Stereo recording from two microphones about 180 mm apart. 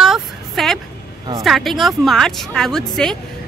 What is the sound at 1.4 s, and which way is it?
A woman's voice, centre (ahead or behind).